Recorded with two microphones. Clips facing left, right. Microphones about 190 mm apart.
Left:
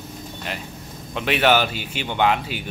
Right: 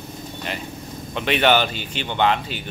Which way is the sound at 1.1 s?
5° left (ahead or behind).